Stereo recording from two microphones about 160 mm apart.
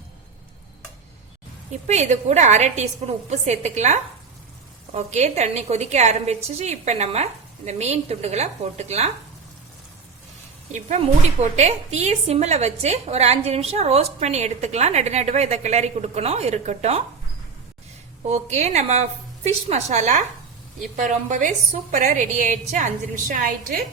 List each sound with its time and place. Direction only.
1.9 s a woman's voice: 45° right (ahead or behind)
10.7 s a woman's voice: 45° right (ahead or behind)
18.3 s a woman's voice: 45° right (ahead or behind)